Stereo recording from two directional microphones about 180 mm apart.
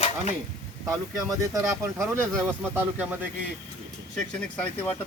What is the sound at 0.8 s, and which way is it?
Speech, 20° right (ahead or behind).